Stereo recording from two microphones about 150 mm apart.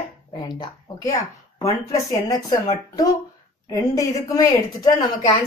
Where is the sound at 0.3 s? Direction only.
30° left (ahead or behind).